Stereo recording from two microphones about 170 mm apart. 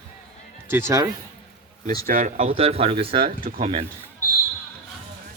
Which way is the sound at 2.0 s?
50° right (ahead or behind).